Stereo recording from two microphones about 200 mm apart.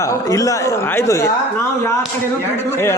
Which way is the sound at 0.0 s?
15° left (ahead or behind).